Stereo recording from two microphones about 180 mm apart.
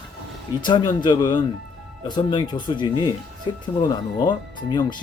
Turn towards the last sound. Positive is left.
turn(degrees=25)  # may be behind; listen again after turning